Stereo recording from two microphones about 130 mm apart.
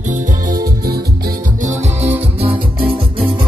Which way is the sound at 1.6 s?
65° right (ahead or behind).